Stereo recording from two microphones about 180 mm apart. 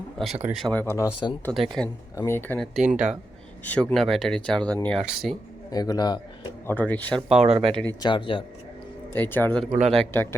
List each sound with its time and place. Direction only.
0.2 s speech: centre (ahead or behind); by 1.3 s 20° left (ahead or behind)
1.5 s speech: 10° right (ahead or behind)
2.1 s speech: 15° left (ahead or behind)
2.7 s speech: 5° right (ahead or behind)
3.6 s speech: 10° left (ahead or behind)
5.7 s speech: 20° left (ahead or behind)
6.7 s speech: 10° left (ahead or behind)
7.3 s speech: 35° right (ahead or behind)
8.0 s speech: 25° left (ahead or behind)
9.1 s speech: 10° left (ahead or behind)